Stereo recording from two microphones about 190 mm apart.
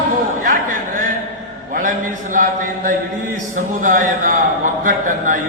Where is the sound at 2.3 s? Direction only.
45° right (ahead or behind).